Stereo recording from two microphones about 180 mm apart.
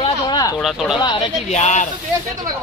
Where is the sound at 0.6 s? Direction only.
Centre (ahead or behind).